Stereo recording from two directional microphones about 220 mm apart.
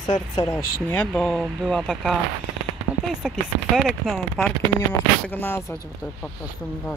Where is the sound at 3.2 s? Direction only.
5° right (ahead or behind).